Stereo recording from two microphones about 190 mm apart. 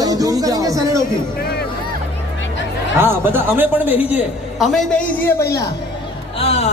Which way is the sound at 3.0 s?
10° right (ahead or behind).